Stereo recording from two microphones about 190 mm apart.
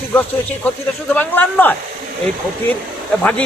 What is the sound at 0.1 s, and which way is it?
A man's voice, 10° left (ahead or behind).